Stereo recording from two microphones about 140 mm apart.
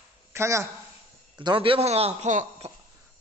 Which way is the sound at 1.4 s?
35° right (ahead or behind).